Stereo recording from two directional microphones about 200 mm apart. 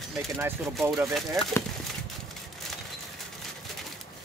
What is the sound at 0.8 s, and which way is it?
Speech, centre (ahead or behind).